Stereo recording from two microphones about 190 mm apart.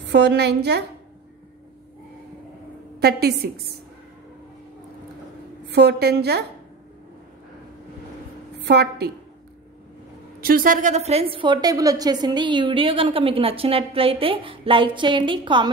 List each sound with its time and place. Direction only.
0.1 s a woman's voice: 60° right (ahead or behind)
3.0 s a woman's voice: 55° right (ahead or behind)
5.7 s a woman's voice: 60° right (ahead or behind)
8.6 s a woman's voice: 60° right (ahead or behind)
10.4 s a woman's voice: 50° right (ahead or behind); by 15.7 s 25° right (ahead or behind)